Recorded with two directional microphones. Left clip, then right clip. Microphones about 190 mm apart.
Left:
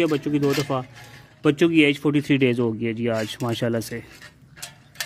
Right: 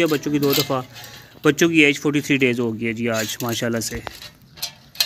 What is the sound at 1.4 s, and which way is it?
Speech, 10° left (ahead or behind).